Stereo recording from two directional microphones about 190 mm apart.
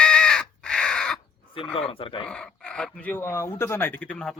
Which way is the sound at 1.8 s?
30° left (ahead or behind).